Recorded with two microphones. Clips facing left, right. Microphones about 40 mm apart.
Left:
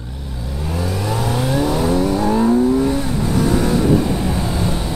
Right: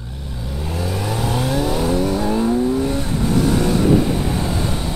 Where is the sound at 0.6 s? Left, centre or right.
Centre.